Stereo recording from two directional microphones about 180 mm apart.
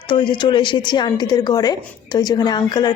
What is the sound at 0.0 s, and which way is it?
Speech, 25° left (ahead or behind).